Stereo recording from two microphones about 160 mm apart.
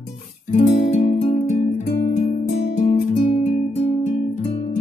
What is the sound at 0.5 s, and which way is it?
Music, 45° left (ahead or behind).